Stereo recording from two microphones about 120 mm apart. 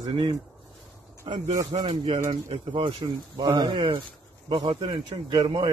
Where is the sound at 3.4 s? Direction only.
35° right (ahead or behind).